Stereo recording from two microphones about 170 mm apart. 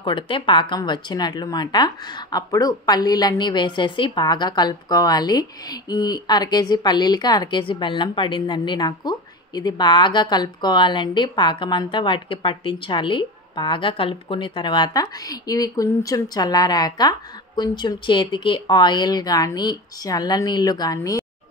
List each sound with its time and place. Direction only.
0.0 s speech: 30° left (ahead or behind)